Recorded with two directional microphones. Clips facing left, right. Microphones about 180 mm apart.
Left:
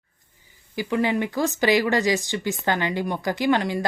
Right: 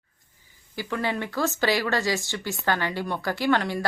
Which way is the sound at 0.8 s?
15° left (ahead or behind).